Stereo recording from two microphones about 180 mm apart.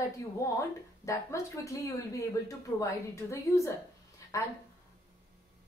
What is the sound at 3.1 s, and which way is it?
Speech, 15° left (ahead or behind).